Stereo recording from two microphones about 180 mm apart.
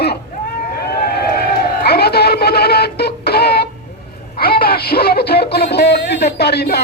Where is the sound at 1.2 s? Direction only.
60° left (ahead or behind).